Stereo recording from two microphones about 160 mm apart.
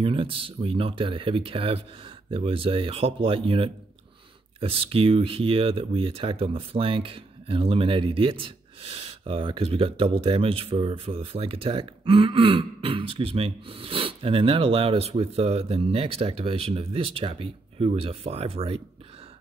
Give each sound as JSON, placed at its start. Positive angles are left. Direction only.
{"t": 0.0, "sound": "speech", "side_deg": -35}